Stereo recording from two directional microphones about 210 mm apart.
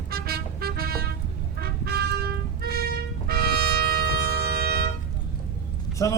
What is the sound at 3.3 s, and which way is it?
Music, 45° right (ahead or behind).